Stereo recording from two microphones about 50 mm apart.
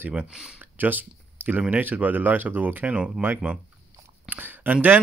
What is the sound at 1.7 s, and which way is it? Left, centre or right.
Speech, right.